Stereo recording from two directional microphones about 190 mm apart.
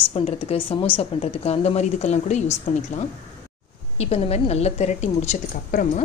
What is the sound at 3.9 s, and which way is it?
A woman's voice, 35° left (ahead or behind).